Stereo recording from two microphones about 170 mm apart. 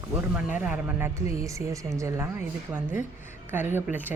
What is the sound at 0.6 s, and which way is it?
Speech, 10° right (ahead or behind).